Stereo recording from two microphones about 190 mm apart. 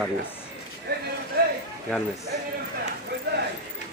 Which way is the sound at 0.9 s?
60° right (ahead or behind).